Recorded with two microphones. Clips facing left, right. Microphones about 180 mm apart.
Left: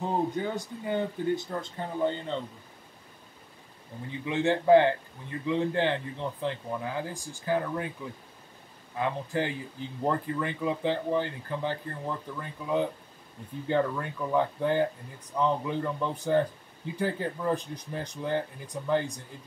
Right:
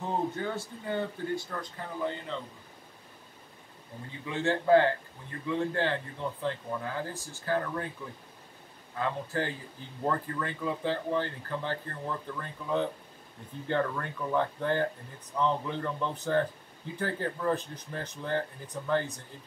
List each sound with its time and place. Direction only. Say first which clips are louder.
0.0 s speech: left 3 dB; 15° left (ahead or behind)
4.3 s speech: left 3 dB; 20° left (ahead or behind)
8.9 s speech: left 2 dB; 15° left (ahead or behind)